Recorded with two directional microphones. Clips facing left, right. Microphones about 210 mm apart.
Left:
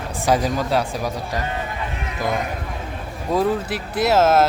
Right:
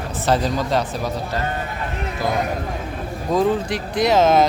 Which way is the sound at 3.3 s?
5° left (ahead or behind).